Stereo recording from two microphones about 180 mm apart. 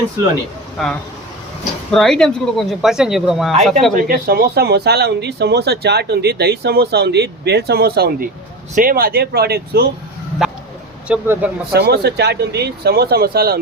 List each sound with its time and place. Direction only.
0.8 s speech: centre (ahead or behind)
3.9 s speech: 50° right (ahead or behind)
10.4 s a sound: 5° right (ahead or behind)
11.1 s speech: 10° right (ahead or behind)
11.7 s speech: 60° right (ahead or behind)